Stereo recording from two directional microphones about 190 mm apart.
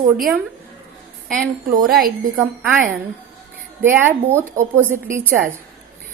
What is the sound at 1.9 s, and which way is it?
Speech, 50° right (ahead or behind).